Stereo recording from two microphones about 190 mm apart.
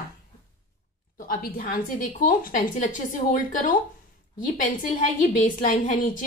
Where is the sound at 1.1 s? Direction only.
45° left (ahead or behind).